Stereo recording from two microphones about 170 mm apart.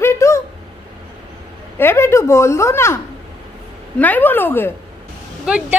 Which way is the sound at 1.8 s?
15° left (ahead or behind).